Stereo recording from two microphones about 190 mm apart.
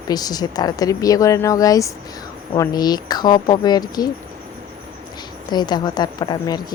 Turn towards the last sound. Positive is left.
turn(degrees=20)  # may be behind; listen again after turning